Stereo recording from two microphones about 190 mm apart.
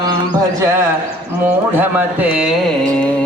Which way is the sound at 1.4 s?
10° right (ahead or behind).